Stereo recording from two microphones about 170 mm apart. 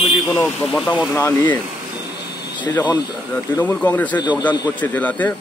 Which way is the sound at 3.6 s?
10° left (ahead or behind).